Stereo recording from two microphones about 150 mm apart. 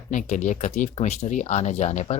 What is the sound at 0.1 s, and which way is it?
Speech, 55° left (ahead or behind).